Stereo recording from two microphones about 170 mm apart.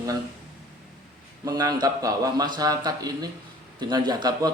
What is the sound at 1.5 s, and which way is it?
A man's voice, 20° right (ahead or behind).